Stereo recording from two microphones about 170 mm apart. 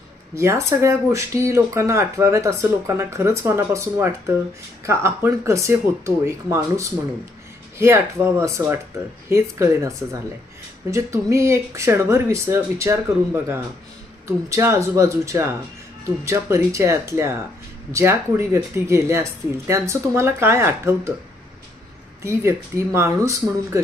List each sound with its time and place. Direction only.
0.3 s speech: 15° right (ahead or behind)
22.2 s speech: 15° right (ahead or behind)